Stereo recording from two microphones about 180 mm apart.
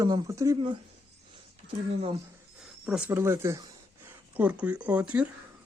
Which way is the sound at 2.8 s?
5° right (ahead or behind).